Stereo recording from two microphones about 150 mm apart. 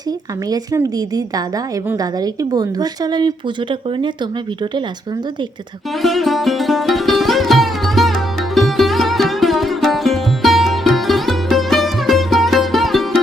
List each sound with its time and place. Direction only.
0.5 s speech: 25° right (ahead or behind)
6.0 s sitar: centre (ahead or behind)